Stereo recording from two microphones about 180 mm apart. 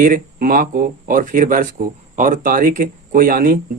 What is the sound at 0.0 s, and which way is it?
Speech, 50° right (ahead or behind).